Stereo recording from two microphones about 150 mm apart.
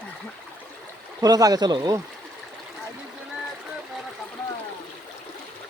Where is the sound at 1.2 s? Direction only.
25° right (ahead or behind).